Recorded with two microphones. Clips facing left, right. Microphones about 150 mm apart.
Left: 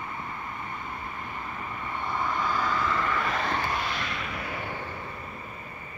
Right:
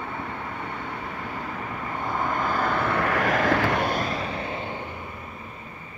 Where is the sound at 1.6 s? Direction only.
45° right (ahead or behind); by 5.1 s 20° right (ahead or behind).